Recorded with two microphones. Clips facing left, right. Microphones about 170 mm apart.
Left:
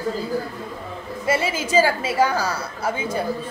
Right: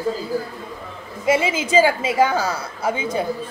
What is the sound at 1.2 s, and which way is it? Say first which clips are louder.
A woman's voice: right 4 dB; 20° right (ahead or behind).